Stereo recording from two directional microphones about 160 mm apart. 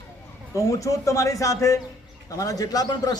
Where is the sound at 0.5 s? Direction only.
20° left (ahead or behind).